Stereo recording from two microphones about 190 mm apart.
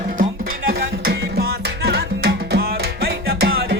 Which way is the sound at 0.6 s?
55° right (ahead or behind).